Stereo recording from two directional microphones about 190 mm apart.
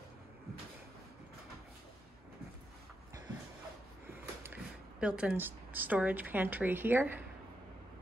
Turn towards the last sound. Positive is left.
turn(degrees=-10)  # may be behind; listen again after turning